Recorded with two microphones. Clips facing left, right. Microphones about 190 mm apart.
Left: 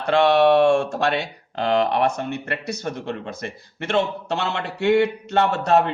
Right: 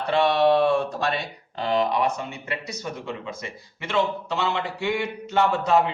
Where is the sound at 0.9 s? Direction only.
75° left (ahead or behind).